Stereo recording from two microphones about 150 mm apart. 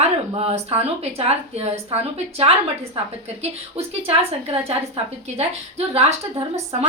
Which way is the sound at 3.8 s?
40° right (ahead or behind).